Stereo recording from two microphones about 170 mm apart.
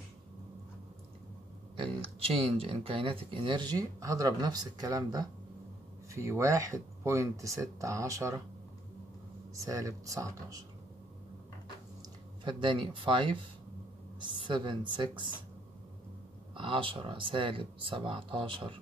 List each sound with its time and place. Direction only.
2.0 s speech: 35° right (ahead or behind); by 8.4 s 20° right (ahead or behind)
9.7 s speech: 20° right (ahead or behind)
12.4 s speech: 30° right (ahead or behind)
14.4 s speech: 30° right (ahead or behind)
16.5 s speech: 30° right (ahead or behind)